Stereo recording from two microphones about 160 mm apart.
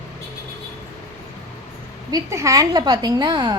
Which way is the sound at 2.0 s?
20° right (ahead or behind).